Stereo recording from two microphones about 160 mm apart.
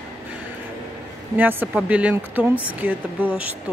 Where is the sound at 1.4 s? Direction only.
10° right (ahead or behind).